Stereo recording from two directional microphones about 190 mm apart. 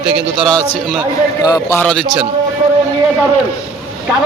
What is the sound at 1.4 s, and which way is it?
Speech, 15° left (ahead or behind).